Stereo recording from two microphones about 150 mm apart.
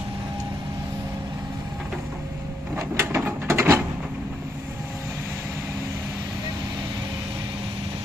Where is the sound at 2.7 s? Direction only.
15° right (ahead or behind).